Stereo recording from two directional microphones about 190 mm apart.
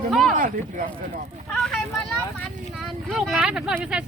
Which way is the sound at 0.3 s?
45° right (ahead or behind).